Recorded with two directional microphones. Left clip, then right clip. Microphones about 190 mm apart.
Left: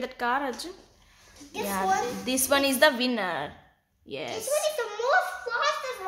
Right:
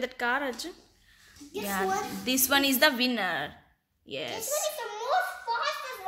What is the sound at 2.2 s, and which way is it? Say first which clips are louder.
A woman's voice: right 1 dB; centre (ahead or behind).